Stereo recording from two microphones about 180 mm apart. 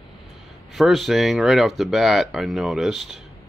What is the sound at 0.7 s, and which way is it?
Speech, centre (ahead or behind).